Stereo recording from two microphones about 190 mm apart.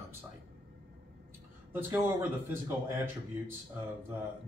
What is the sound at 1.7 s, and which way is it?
Speech, 10° right (ahead or behind).